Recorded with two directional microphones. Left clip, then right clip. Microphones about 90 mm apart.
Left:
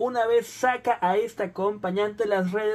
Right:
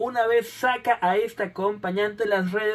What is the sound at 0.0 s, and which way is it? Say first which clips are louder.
Speech: right 1 dB; 40° left (ahead or behind).